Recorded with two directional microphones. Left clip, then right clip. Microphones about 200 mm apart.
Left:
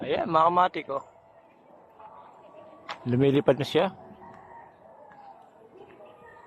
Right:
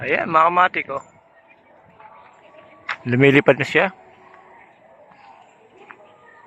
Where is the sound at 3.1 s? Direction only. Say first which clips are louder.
Right 8 dB; 10° right (ahead or behind).